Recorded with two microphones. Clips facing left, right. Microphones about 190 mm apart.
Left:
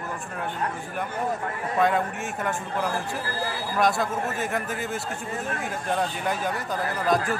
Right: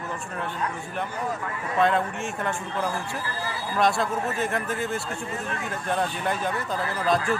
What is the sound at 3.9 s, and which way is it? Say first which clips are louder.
Speech: right 1 dB; centre (ahead or behind).